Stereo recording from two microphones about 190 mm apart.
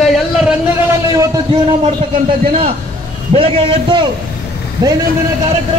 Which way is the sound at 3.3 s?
30° right (ahead or behind).